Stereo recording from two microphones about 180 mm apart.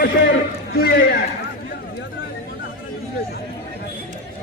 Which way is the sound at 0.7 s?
60° left (ahead or behind).